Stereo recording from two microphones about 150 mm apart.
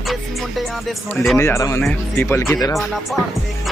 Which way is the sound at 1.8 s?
5° left (ahead or behind).